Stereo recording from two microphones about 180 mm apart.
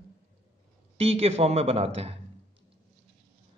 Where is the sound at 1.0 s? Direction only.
35° right (ahead or behind).